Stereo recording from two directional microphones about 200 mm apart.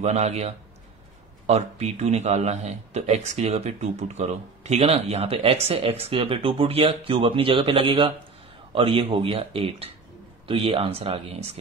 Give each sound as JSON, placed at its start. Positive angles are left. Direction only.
{"t": 0.0, "sound": "a man's voice", "side_deg": -35}